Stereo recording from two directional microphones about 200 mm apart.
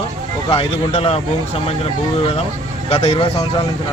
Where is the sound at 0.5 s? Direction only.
30° left (ahead or behind).